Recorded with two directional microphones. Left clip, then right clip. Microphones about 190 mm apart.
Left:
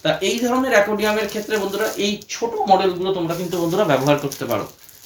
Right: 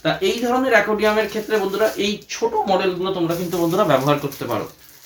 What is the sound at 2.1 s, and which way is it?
Speech, 5° right (ahead or behind).